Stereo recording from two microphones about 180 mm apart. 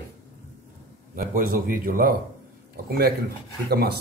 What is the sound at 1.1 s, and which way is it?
Chopping, 50° right (ahead or behind).